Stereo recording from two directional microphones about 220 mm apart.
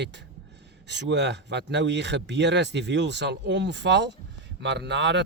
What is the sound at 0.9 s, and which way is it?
Speech, 50° right (ahead or behind).